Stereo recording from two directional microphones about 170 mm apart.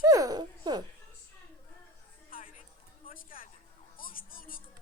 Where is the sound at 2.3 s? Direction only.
55° left (ahead or behind).